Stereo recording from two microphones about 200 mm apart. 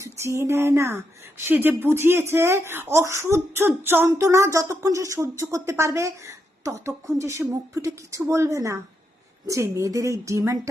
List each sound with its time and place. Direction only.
0.0 s speech: 15° right (ahead or behind)